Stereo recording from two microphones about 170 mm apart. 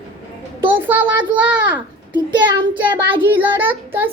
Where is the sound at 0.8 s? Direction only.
10° right (ahead or behind).